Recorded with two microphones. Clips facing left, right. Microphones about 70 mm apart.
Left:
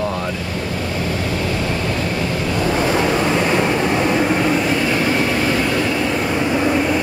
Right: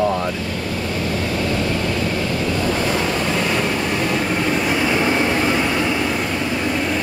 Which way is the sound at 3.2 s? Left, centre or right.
Left.